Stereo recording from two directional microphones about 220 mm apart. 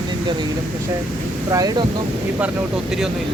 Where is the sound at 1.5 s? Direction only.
15° right (ahead or behind).